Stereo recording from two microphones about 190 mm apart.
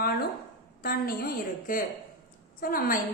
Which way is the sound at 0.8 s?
50° left (ahead or behind).